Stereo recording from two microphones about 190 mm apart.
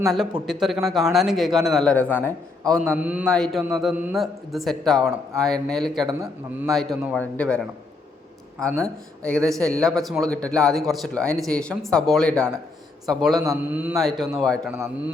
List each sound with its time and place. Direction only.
0.0 s speech: centre (ahead or behind)
2.9 s a man's voice: 5° right (ahead or behind)
3.2 s speech: 5° left (ahead or behind)
6.2 s a man's voice: 10° right (ahead or behind)
13.3 s a man's voice: 20° right (ahead or behind)
13.7 s speech: 10° right (ahead or behind)
14.7 s a man's voice: 10° right (ahead or behind)